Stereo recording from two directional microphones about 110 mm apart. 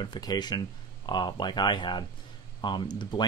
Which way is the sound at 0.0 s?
40° left (ahead or behind).